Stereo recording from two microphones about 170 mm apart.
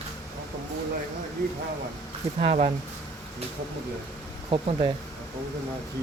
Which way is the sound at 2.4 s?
35° right (ahead or behind).